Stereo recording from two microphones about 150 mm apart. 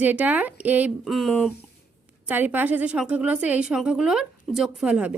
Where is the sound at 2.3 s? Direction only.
10° right (ahead or behind).